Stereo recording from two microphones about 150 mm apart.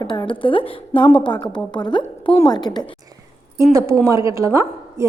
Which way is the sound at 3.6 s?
20° right (ahead or behind).